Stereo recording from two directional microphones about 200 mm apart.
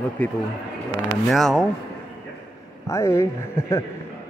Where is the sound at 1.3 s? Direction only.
Centre (ahead or behind).